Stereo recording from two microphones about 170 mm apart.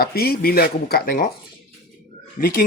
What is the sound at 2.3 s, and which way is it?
Speech, 55° left (ahead or behind).